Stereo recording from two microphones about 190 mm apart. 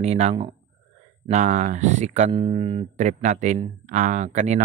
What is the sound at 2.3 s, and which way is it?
Speech, 30° right (ahead or behind).